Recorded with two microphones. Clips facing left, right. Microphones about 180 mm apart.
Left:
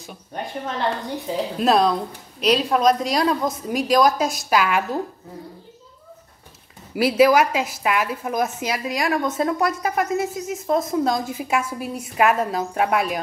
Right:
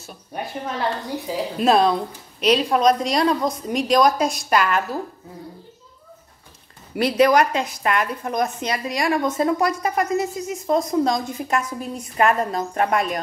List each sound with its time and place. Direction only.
0.3 s a woman's voice: 5° right (ahead or behind)
7.0 s a woman's voice: 5° left (ahead or behind)